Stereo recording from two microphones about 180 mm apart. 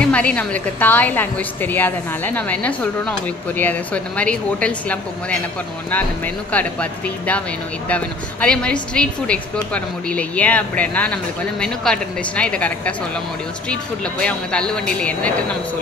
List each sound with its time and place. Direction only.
0.0 s a woman's voice: 5° left (ahead or behind)